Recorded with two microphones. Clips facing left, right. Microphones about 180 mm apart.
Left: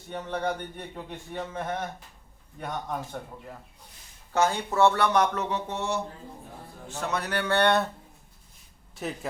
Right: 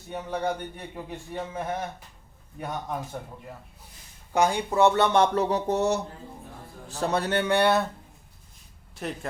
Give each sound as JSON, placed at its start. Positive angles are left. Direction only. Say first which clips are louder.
{"t": 0.1, "sound": "a man's voice", "louder": "right 1 dB", "side_deg": -10}
{"t": 4.3, "sound": "speech", "louder": "right 2 dB", "side_deg": -15}
{"t": 7.5, "sound": "speech", "louder": "even", "side_deg": -5}
{"t": 9.0, "sound": "speech", "louder": "even", "side_deg": 0}